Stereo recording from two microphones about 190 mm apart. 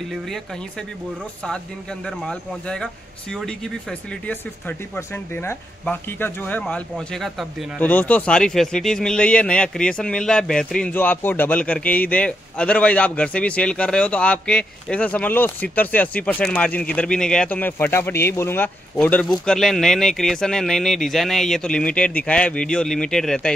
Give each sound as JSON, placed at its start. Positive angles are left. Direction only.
{"t": 2.0, "sound": "speech", "side_deg": 5}